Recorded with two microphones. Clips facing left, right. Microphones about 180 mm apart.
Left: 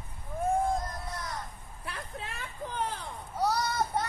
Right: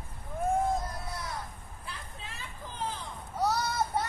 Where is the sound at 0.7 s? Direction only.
5° right (ahead or behind).